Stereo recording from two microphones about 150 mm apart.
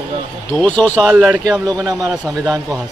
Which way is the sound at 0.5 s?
10° left (ahead or behind).